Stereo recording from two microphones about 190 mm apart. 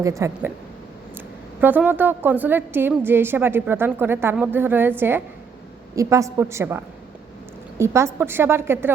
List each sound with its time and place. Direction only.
0.0 s a woman's voice: 15° right (ahead or behind)
1.6 s a woman's voice: 10° right (ahead or behind)